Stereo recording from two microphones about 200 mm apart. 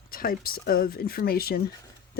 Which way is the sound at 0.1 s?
45° left (ahead or behind).